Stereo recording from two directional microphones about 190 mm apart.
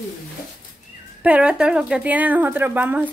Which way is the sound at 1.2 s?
5° right (ahead or behind).